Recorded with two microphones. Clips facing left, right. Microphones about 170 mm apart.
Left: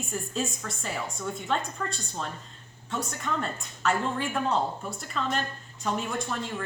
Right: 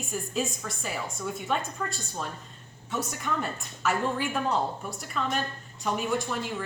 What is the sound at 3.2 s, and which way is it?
A woman's voice, centre (ahead or behind).